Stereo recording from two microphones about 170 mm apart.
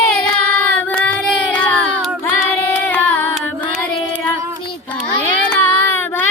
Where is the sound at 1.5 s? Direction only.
10° left (ahead or behind).